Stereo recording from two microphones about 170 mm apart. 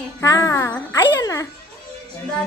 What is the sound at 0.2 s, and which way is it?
A child's voice, 20° left (ahead or behind).